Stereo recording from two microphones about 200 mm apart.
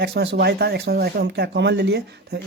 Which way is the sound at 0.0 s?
55° right (ahead or behind).